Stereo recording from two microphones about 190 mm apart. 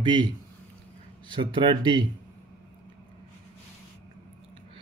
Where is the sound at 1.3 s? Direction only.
25° right (ahead or behind).